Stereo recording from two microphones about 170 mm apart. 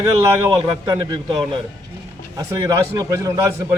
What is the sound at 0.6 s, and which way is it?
Speech, 30° right (ahead or behind).